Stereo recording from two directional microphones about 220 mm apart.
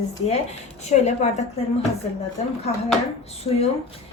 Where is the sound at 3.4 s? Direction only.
25° left (ahead or behind).